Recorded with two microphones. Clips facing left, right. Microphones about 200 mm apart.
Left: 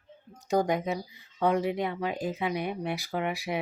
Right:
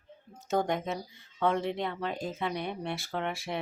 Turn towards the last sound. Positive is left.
turn(degrees=5)  # may be behind; listen again after turning